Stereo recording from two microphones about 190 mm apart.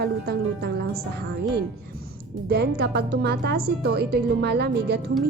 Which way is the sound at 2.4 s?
60° right (ahead or behind).